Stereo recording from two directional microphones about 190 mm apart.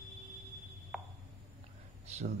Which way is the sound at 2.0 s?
35° right (ahead or behind).